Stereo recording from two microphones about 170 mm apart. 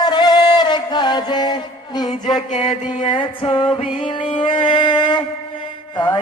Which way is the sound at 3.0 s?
30° left (ahead or behind).